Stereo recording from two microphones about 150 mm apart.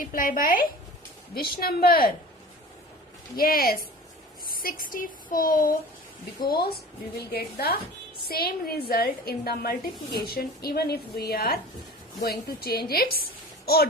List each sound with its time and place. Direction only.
0.0 s speech: 65° left (ahead or behind)
1.4 s speech: 90° left
3.3 s speech: 75° left (ahead or behind)
4.6 s speech: 65° left (ahead or behind)
6.5 s speech: 90° left